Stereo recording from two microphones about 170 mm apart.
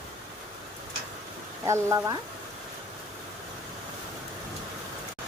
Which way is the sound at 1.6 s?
15° right (ahead or behind).